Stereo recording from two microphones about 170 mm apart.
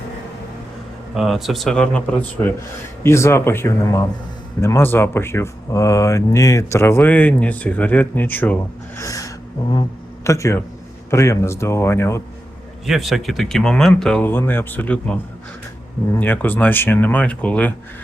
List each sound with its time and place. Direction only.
1.1 s speech: centre (ahead or behind)
9.0 s gasp: 20° left (ahead or behind)
10.2 s speech: 15° left (ahead or behind)
12.8 s speech: centre (ahead or behind)